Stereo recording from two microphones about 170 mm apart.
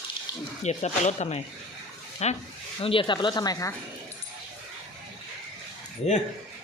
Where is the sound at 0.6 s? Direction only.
40° left (ahead or behind); by 3.7 s 20° left (ahead or behind).